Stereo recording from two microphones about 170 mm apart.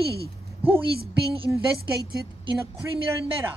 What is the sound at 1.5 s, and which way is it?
Speech, 15° right (ahead or behind).